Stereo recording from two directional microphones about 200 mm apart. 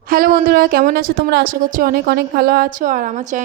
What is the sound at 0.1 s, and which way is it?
A woman's voice, 45° right (ahead or behind).